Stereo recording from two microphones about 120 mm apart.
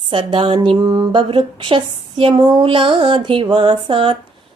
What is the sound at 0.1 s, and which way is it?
Speech, 45° right (ahead or behind).